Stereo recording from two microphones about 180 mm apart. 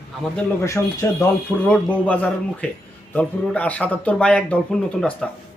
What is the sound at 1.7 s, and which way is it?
A man's voice, 5° left (ahead or behind).